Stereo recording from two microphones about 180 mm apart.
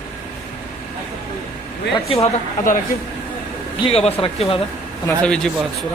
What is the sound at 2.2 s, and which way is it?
Speech, 45° left (ahead or behind).